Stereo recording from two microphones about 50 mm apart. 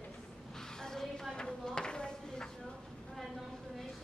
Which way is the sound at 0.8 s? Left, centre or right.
Centre.